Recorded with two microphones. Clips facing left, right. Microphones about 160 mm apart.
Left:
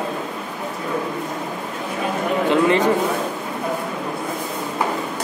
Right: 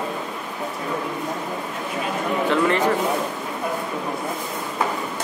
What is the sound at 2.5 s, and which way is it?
Speech, 20° left (ahead or behind).